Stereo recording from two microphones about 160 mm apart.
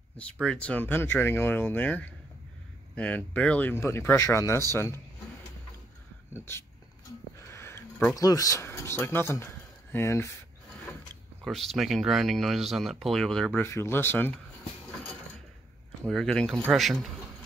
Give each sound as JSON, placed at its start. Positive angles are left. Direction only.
{"t": 0.2, "sound": "speech", "side_deg": 5}
{"t": 7.1, "sound": "a sound", "side_deg": 20}
{"t": 9.9, "sound": "speech", "side_deg": 15}
{"t": 11.4, "sound": "speech", "side_deg": 0}
{"t": 13.7, "sound": "speech", "side_deg": 15}
{"t": 16.0, "sound": "speech", "side_deg": 0}